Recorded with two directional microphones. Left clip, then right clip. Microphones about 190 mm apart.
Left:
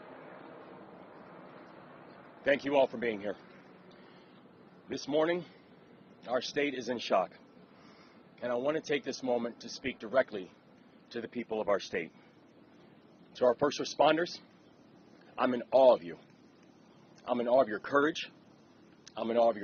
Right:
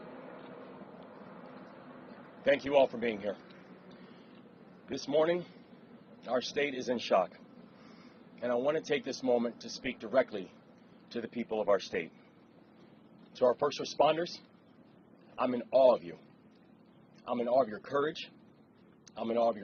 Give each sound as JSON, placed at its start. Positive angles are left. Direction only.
{"t": 0.0, "sound": "a sound", "side_deg": 45}
{"t": 3.8, "sound": "vehicle", "side_deg": 50}
{"t": 4.9, "sound": "speech", "side_deg": 50}
{"t": 8.4, "sound": "speech", "side_deg": 50}
{"t": 13.3, "sound": "speech", "side_deg": 50}
{"t": 17.2, "sound": "speech", "side_deg": 45}